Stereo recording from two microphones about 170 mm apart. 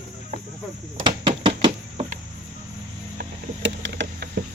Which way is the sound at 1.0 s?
30° right (ahead or behind).